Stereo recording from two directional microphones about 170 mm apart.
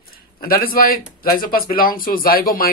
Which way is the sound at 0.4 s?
60° left (ahead or behind).